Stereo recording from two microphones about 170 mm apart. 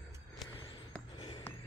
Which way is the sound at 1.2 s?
30° left (ahead or behind).